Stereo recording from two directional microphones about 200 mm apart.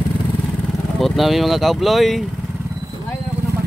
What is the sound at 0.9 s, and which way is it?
Speech, centre (ahead or behind).